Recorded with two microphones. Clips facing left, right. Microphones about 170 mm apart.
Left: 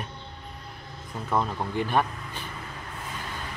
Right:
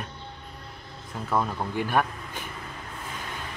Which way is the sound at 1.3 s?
5° right (ahead or behind).